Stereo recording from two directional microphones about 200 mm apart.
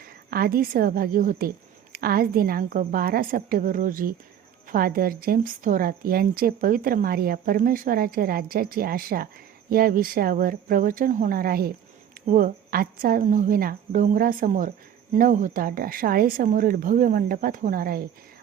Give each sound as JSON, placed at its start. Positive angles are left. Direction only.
{"t": 0.0, "sound": "a woman's voice", "side_deg": -50}